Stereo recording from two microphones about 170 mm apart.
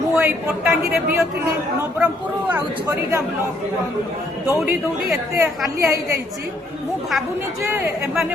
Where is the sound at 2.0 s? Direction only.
10° right (ahead or behind).